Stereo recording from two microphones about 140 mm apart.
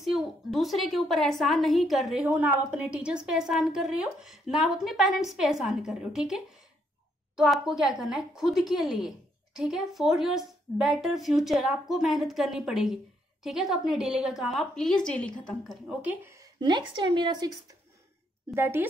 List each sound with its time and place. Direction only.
0.0 s a woman's voice: centre (ahead or behind)
2.2 s a woman's voice: 10° right (ahead or behind); by 15.3 s 5° left (ahead or behind)
16.0 s speech: 10° right (ahead or behind)
16.3 s a woman's voice: 30° right (ahead or behind)
18.5 s speech: 15° right (ahead or behind)